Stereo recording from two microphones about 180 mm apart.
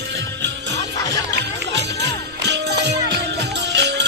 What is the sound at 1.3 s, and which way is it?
Music, 75° right (ahead or behind).